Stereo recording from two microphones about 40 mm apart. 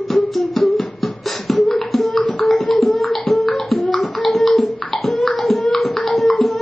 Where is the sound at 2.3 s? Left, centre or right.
Centre.